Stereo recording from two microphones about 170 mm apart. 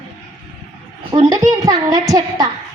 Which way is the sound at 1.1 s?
25° right (ahead or behind).